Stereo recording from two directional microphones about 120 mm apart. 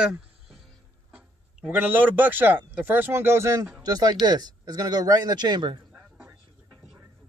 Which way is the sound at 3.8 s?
35° right (ahead or behind).